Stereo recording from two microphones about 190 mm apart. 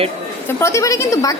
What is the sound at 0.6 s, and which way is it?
Speech, 15° left (ahead or behind).